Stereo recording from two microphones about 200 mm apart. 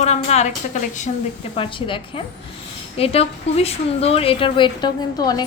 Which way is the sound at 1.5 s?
25° left (ahead or behind).